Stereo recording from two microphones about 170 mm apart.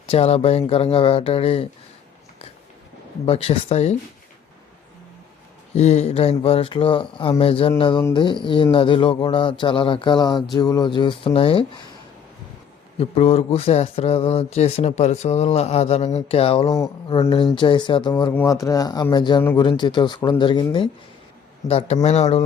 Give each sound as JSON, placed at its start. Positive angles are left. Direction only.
{"t": 0.0, "sound": "speech", "side_deg": 35}
{"t": 3.2, "sound": "speech", "side_deg": 35}
{"t": 5.7, "sound": "speech", "side_deg": 40}
{"t": 13.0, "sound": "speech", "side_deg": 35}
{"t": 21.7, "sound": "speech", "side_deg": 35}